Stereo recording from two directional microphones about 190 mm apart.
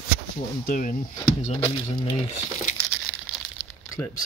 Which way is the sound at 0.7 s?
40° left (ahead or behind).